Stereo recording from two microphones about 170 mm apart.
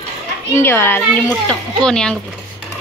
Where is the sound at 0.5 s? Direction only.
15° left (ahead or behind).